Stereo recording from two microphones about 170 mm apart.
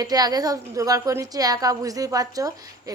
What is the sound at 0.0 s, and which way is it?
A woman's voice, 20° right (ahead or behind).